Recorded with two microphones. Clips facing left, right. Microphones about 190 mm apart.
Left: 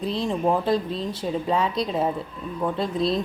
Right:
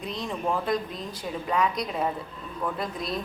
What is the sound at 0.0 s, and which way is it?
Speech, 30° left (ahead or behind).